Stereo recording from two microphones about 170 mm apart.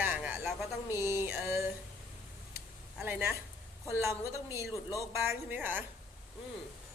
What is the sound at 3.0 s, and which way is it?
A woman's voice, 10° right (ahead or behind).